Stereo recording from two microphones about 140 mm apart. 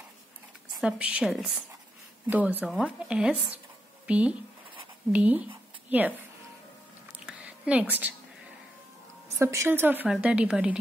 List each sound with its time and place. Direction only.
0.7 s a woman's voice: 5° right (ahead or behind)
7.2 s a sound: 10° right (ahead or behind)
8.0 s a woman's voice: 10° right (ahead or behind)
9.4 s a woman's voice: 20° right (ahead or behind)